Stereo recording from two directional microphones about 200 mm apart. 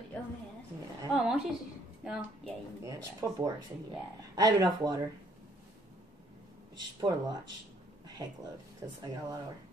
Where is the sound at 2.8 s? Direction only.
15° right (ahead or behind).